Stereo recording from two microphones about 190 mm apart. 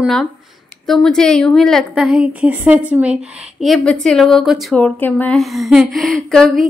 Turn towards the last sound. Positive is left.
turn(degrees=5)  # may be behind; listen again after turning